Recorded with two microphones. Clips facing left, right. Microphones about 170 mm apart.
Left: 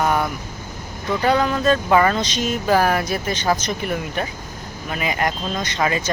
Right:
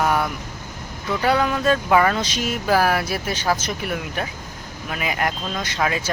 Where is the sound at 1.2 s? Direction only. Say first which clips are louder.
Left 1 dB; 5° right (ahead or behind).